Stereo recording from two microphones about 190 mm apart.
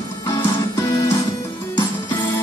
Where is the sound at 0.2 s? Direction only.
15° left (ahead or behind).